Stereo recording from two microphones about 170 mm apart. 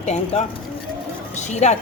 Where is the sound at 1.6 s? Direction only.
45° left (ahead or behind).